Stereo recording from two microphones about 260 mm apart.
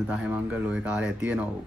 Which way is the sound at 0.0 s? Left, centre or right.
Centre.